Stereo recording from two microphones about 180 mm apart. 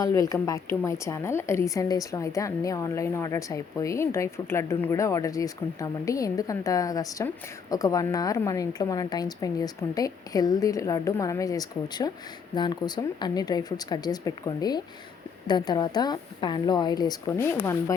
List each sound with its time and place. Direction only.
0.0 s a woman's voice: 20° left (ahead or behind)